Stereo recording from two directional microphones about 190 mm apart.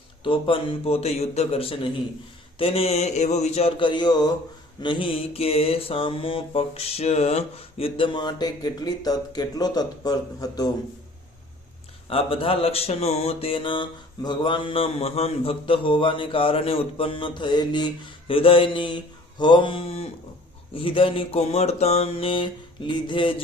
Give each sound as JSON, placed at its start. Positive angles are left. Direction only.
{"t": 0.3, "sound": "speech", "side_deg": 25}
{"t": 12.0, "sound": "speech", "side_deg": 30}